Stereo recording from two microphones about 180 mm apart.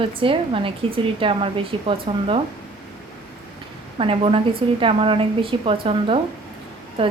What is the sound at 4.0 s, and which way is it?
A woman's voice, 30° right (ahead or behind).